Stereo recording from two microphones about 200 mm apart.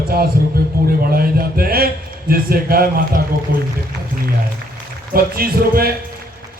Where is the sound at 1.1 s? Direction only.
45° right (ahead or behind).